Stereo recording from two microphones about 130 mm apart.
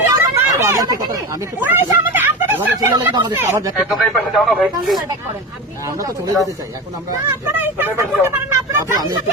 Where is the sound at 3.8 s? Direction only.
Centre (ahead or behind).